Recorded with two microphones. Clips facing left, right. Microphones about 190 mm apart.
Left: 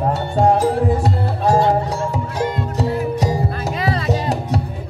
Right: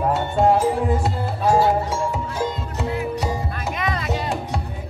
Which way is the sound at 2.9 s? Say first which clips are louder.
Left 2 dB; 40° left (ahead or behind).